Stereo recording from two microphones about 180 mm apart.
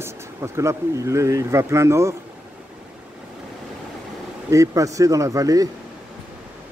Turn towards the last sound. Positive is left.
turn(degrees=-20)  # may be behind; listen again after turning